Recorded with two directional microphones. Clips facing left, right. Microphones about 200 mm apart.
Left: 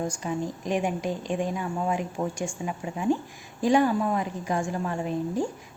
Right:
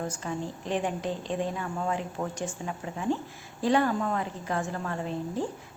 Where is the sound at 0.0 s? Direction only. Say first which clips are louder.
Left 4 dB; 15° left (ahead or behind).